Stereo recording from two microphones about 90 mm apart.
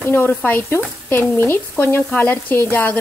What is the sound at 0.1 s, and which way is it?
Speech, 25° left (ahead or behind).